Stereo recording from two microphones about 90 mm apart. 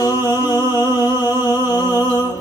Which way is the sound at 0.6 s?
25° right (ahead or behind).